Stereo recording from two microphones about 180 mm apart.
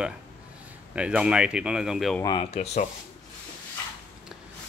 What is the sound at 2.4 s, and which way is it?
Speech, 35° left (ahead or behind).